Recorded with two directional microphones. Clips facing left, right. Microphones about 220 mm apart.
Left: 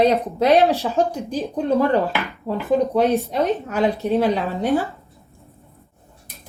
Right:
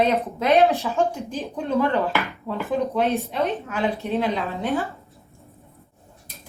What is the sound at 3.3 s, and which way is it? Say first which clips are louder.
Speech: left 4 dB; 40° left (ahead or behind).